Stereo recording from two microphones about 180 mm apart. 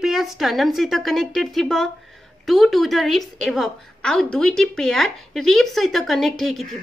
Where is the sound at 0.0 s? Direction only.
Centre (ahead or behind).